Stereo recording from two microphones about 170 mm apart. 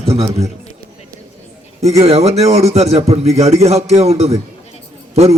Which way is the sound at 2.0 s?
35° right (ahead or behind).